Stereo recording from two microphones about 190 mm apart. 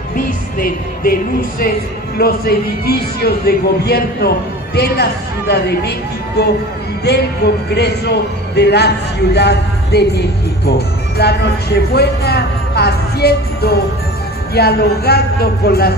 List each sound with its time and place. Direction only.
0.1 s music: 50° left (ahead or behind)
2.1 s a man's voice: 55° left (ahead or behind)
7.7 s a man's voice: 60° left (ahead or behind)